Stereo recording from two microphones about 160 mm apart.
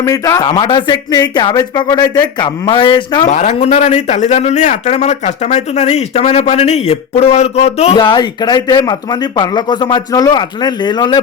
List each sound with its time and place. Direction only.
0.0 s speech: 20° left (ahead or behind)
3.2 s a man's voice: 50° left (ahead or behind)
7.9 s speech: 30° left (ahead or behind)